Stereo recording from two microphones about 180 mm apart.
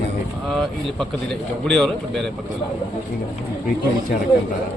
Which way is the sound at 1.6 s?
5° left (ahead or behind).